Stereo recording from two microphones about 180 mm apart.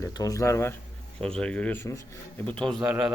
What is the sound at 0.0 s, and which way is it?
Speech, 20° left (ahead or behind).